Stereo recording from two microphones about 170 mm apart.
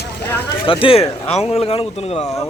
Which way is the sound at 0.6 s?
30° left (ahead or behind).